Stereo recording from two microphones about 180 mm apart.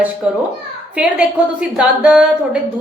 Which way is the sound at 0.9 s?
5° right (ahead or behind).